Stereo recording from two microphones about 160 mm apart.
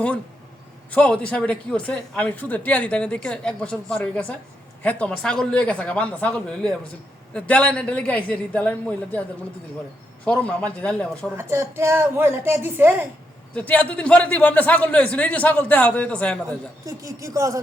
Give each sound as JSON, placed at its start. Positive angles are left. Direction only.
{"t": 0.9, "sound": "a man's voice", "side_deg": 10}
{"t": 10.2, "sound": "a man's voice", "side_deg": 10}
{"t": 11.3, "sound": "a woman's voice", "side_deg": -15}
{"t": 13.6, "sound": "a man's voice", "side_deg": 10}
{"t": 16.8, "sound": "a woman's voice", "side_deg": -20}